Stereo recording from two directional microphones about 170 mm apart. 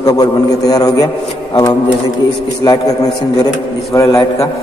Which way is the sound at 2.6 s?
20° left (ahead or behind).